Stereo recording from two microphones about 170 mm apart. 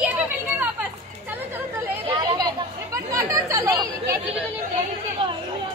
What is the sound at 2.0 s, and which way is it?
Chatter, 20° right (ahead or behind).